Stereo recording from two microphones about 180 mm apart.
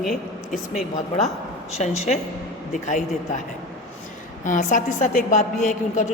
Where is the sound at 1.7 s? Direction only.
40° left (ahead or behind).